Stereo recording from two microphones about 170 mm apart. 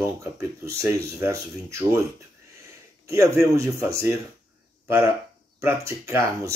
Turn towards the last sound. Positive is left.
turn(degrees=-15)  # may be behind; listen again after turning